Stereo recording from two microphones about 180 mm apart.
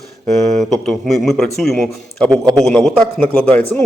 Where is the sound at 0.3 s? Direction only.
Centre (ahead or behind).